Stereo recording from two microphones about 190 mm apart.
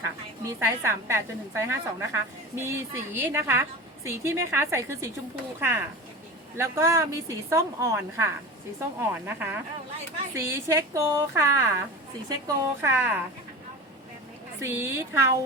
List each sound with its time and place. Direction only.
0.4 s a woman's voice: 15° right (ahead or behind)
14.6 s a woman's voice: 15° right (ahead or behind)